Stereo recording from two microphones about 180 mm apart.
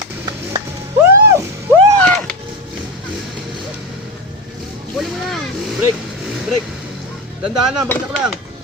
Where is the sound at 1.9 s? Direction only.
5° left (ahead or behind).